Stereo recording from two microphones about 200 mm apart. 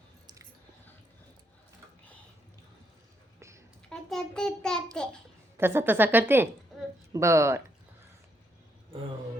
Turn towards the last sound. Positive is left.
turn(degrees=-15)  # may be behind; listen again after turning